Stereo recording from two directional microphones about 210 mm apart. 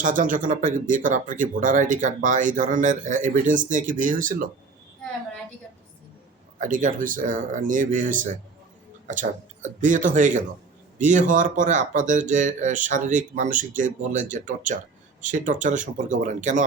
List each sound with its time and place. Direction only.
0.0 s speech: 40° right (ahead or behind)
6.6 s speech: 40° right (ahead or behind)